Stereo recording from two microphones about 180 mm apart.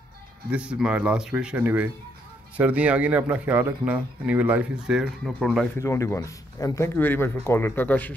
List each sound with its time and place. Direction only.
0.5 s speech: 5° right (ahead or behind)
5.8 s speech: 15° left (ahead or behind)